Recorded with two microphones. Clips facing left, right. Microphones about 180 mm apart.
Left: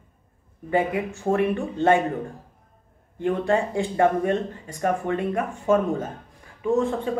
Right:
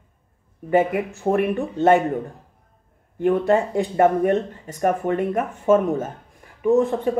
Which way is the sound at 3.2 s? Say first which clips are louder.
Right 4 dB; 20° right (ahead or behind).